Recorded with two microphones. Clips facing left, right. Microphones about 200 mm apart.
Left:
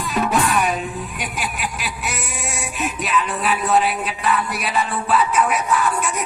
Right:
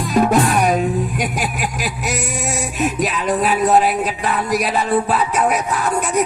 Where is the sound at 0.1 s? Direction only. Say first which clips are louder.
Right 5 dB; 40° right (ahead or behind).